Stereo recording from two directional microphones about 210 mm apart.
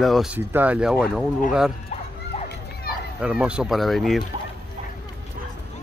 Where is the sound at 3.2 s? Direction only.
5° right (ahead or behind).